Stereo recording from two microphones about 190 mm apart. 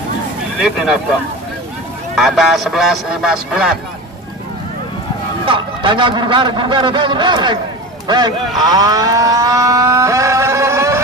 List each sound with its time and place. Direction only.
0.6 s speech: centre (ahead or behind)
2.1 s speech: centre (ahead or behind)
5.4 s a man's voice: 25° right (ahead or behind)
8.6 s a sound: 20° right (ahead or behind)